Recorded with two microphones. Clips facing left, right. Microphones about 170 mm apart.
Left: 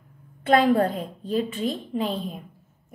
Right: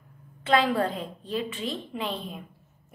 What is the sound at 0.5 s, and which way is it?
A woman's voice, 45° left (ahead or behind).